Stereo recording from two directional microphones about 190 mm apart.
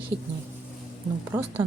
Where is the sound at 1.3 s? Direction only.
10° right (ahead or behind).